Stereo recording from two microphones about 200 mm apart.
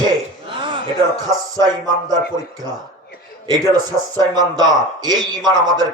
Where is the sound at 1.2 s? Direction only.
20° right (ahead or behind).